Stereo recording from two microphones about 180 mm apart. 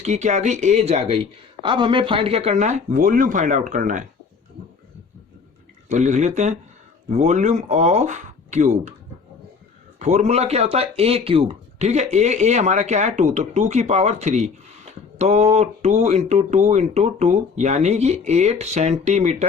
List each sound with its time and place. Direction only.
0.0 s speech: 40° right (ahead or behind)
5.9 s speech: 40° right (ahead or behind)
10.0 s speech: 40° right (ahead or behind)